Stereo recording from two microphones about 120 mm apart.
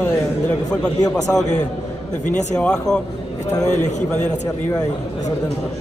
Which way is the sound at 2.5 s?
5° left (ahead or behind).